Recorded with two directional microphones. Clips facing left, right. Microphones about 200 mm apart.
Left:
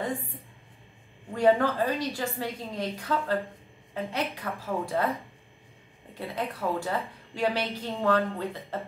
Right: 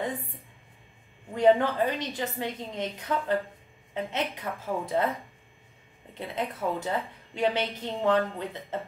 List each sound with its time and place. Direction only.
1.3 s a woman's voice: 20° right (ahead or behind)
6.1 s a woman's voice: 20° right (ahead or behind)